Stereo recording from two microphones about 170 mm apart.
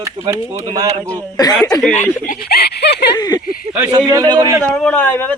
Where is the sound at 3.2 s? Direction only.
25° left (ahead or behind).